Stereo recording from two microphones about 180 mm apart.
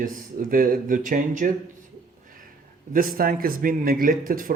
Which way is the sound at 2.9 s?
50° right (ahead or behind).